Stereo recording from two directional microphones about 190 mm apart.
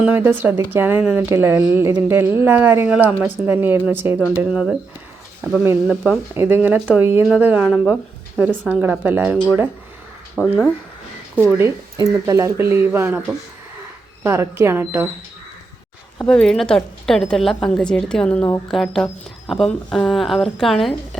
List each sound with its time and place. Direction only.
0.0 s speech: 10° right (ahead or behind)
5.9 s a woman's voice: 5° right (ahead or behind)
11.5 s speech: 15° right (ahead or behind)
16.1 s a woman's voice: 5° left (ahead or behind)